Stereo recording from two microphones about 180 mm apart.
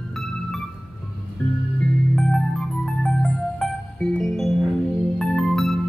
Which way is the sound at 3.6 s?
5° left (ahead or behind).